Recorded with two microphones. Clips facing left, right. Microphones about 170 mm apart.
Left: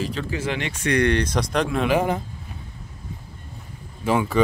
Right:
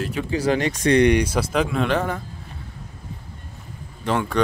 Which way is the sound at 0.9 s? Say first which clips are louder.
Right 3 dB; 15° right (ahead or behind).